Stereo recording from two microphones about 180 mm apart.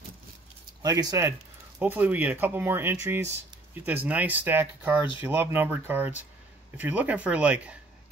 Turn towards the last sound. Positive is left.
turn(degrees=-5)  # may be behind; listen again after turning